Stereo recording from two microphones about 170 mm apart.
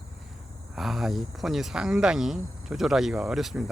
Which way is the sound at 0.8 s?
Centre (ahead or behind).